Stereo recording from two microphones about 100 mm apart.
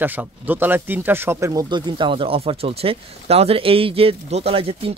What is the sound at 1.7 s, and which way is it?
Speech, 50° right (ahead or behind).